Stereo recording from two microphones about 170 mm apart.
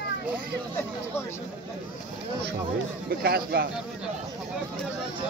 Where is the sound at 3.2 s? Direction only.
65° right (ahead or behind).